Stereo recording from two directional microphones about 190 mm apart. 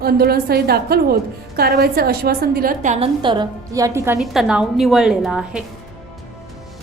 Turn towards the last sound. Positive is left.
turn(degrees=-5)  # may be behind; listen again after turning